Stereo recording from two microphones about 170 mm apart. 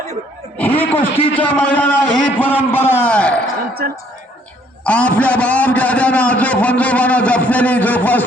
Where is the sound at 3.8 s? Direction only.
60° right (ahead or behind).